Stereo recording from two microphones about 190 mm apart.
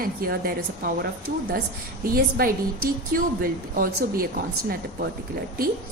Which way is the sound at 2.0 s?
50° right (ahead or behind).